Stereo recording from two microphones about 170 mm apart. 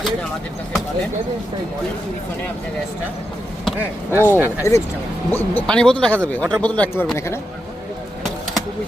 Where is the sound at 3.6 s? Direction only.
10° right (ahead or behind).